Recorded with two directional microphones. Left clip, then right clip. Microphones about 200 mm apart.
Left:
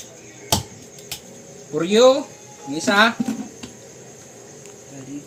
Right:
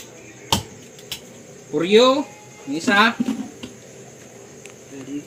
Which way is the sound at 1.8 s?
30° left (ahead or behind).